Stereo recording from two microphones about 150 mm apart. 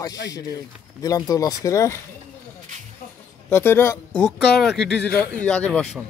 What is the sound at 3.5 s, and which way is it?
Speech, 15° left (ahead or behind).